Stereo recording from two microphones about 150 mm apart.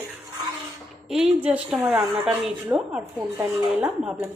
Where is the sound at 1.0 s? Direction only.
5° right (ahead or behind).